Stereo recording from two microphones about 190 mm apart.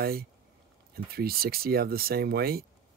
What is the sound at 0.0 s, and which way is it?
Speech, 55° right (ahead or behind).